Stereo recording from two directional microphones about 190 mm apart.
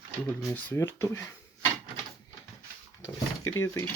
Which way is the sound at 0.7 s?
10° left (ahead or behind).